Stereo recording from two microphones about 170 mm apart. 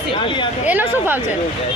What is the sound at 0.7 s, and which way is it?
Speech, 10° right (ahead or behind).